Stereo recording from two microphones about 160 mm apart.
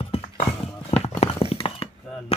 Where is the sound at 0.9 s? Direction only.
40° left (ahead or behind).